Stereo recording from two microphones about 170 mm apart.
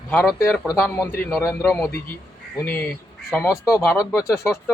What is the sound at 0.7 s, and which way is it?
A man's voice, 15° left (ahead or behind).